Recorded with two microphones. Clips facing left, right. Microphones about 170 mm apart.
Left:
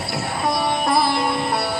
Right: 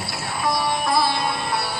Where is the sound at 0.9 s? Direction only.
60° left (ahead or behind).